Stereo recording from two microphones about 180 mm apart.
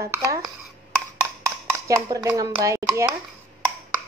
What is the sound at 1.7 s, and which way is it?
Speech, 15° right (ahead or behind).